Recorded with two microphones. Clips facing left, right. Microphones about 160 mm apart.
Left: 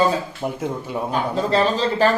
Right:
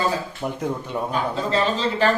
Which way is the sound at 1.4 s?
35° left (ahead or behind).